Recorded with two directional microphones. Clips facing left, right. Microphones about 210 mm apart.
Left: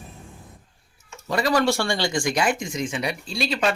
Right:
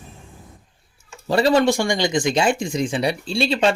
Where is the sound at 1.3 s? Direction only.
30° right (ahead or behind).